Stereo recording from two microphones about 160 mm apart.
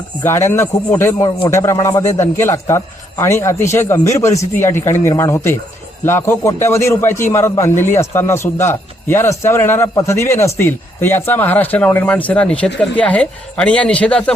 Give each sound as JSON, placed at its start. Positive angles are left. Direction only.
{"t": 0.2, "sound": "a man's voice", "side_deg": 15}